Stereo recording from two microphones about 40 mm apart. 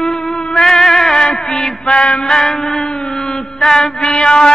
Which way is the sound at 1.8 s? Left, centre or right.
Centre.